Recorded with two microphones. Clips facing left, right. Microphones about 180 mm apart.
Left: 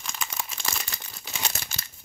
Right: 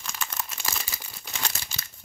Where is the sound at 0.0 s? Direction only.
Centre (ahead or behind).